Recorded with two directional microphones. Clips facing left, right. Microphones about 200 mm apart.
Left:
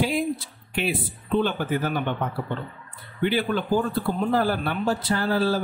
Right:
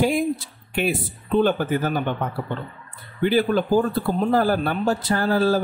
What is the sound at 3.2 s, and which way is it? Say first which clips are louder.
Speech: right 4 dB; 40° right (ahead or behind).